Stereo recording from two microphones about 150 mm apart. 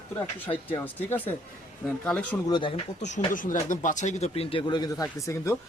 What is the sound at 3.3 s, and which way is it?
Speech, 60° left (ahead or behind).